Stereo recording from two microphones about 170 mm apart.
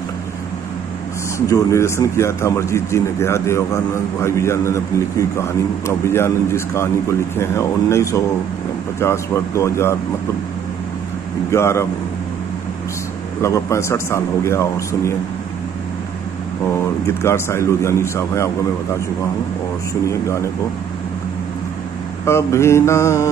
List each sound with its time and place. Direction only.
1.5 s a man's voice: 15° left (ahead or behind)
11.5 s a man's voice: 15° left (ahead or behind)
13.4 s a man's voice: 15° left (ahead or behind)
16.7 s a man's voice: 15° left (ahead or behind)
20.1 s a man's voice: 15° left (ahead or behind)
22.2 s a man's voice: 15° left (ahead or behind)